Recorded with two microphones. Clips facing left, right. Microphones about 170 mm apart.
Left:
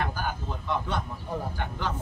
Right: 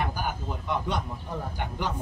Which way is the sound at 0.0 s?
15° right (ahead or behind).